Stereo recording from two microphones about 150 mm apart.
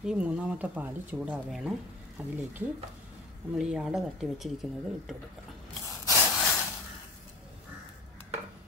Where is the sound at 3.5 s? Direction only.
5° right (ahead or behind).